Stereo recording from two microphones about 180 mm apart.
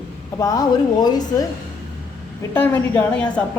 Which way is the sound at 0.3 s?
20° left (ahead or behind).